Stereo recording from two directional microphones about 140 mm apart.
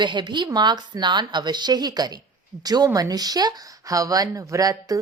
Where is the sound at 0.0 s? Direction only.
35° right (ahead or behind).